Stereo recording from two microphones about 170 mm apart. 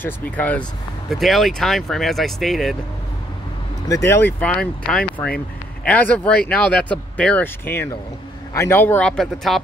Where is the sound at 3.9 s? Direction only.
15° left (ahead or behind).